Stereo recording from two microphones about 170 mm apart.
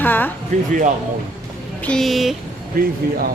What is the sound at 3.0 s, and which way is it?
Speech, 65° right (ahead or behind).